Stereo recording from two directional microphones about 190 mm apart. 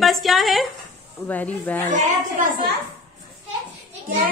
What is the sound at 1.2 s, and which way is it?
Speech, 10° left (ahead or behind).